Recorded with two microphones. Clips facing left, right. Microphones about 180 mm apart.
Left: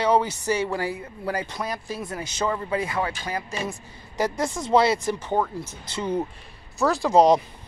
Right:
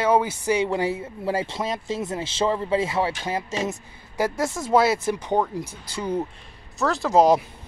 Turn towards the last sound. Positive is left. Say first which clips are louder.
# even
turn(degrees=-5)  # may be behind; listen again after turning